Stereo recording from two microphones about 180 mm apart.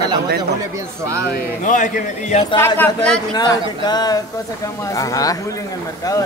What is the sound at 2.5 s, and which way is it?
Speech, 10° left (ahead or behind).